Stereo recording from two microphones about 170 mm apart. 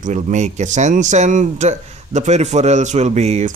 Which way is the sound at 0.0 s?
45° right (ahead or behind).